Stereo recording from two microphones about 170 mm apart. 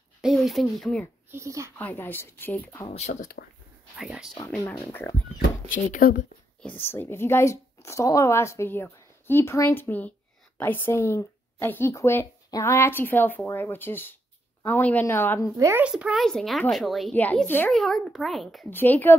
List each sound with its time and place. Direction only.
0.2 s speech: centre (ahead or behind)
1.3 s speech: 15° right (ahead or behind)
1.8 s a woman's voice: 10° left (ahead or behind)
2.9 s speech: 40° left (ahead or behind)
4.0 s speech: centre (ahead or behind)
5.0 s a woman's voice: 10° left (ahead or behind)
5.9 s speech: 55° left (ahead or behind)
6.6 s a woman's voice: 10° left (ahead or behind)
15.5 s speech: 15° right (ahead or behind)
15.9 s speech: 5° right (ahead or behind)
18.7 s a woman's voice: 10° left (ahead or behind)